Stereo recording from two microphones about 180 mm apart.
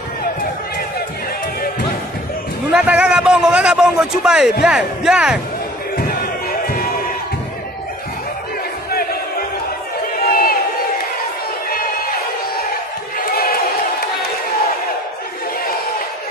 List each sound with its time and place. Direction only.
2.7 s a sound: 5° right (ahead or behind)
4.6 s speech: 5° right (ahead or behind)
10.2 s crowd: 55° left (ahead or behind)